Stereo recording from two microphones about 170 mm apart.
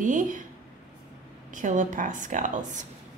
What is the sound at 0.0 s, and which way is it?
Speech, 50° right (ahead or behind).